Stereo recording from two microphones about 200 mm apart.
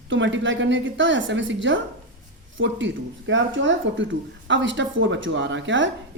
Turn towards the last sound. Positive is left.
turn(degrees=-70)  # may be behind; listen again after turning